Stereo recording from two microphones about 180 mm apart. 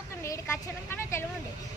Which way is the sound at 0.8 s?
15° left (ahead or behind).